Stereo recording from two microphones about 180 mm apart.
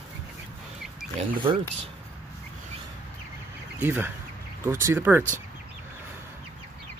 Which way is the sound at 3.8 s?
10° right (ahead or behind).